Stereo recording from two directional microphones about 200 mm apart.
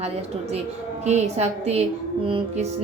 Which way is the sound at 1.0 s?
35° right (ahead or behind).